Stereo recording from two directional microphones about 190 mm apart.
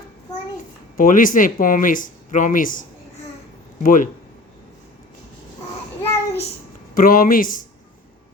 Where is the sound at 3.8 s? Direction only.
45° left (ahead or behind).